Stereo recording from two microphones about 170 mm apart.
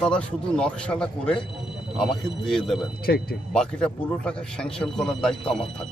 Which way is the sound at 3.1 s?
75° left (ahead or behind).